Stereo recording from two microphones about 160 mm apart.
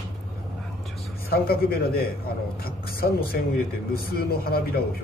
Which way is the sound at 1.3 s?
75° left (ahead or behind).